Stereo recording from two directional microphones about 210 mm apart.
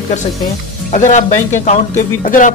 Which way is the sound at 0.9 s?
35° left (ahead or behind).